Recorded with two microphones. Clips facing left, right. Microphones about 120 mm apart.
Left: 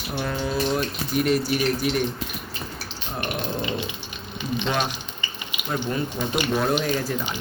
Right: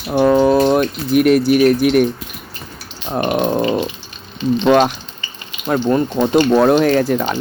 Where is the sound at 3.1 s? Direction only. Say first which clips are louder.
Right 12 dB; 80° right.